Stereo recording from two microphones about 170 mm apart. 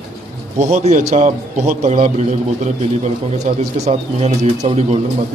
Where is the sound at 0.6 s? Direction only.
40° right (ahead or behind).